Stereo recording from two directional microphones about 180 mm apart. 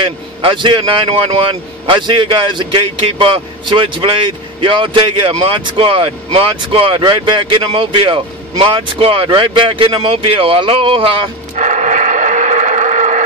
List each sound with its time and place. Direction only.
0.0 s a man's voice: 30° right (ahead or behind)
11.5 s radio: 40° right (ahead or behind)